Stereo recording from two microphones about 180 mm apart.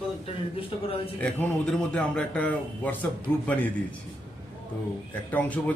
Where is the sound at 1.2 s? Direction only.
10° left (ahead or behind).